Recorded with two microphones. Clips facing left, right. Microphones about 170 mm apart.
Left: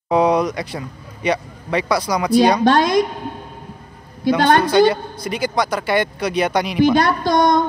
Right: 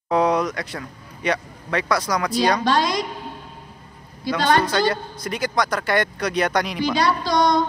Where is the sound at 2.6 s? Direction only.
55° left (ahead or behind).